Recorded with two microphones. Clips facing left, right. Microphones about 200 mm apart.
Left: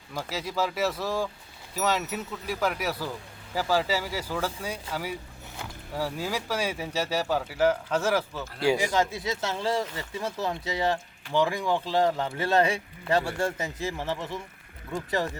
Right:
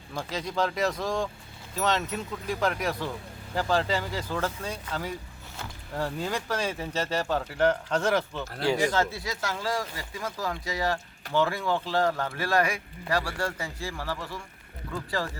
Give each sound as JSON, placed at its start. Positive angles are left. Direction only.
{"t": 0.1, "sound": "speech", "side_deg": 5}